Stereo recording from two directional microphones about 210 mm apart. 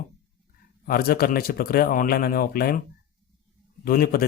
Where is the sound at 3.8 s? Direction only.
45° left (ahead or behind).